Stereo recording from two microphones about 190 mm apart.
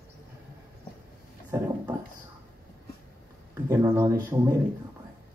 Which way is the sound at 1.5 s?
15° right (ahead or behind).